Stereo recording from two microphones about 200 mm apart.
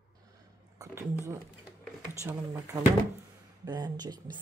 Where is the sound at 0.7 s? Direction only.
15° right (ahead or behind).